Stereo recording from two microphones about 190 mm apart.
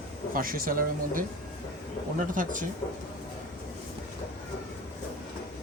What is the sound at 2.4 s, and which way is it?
Speech, 45° right (ahead or behind).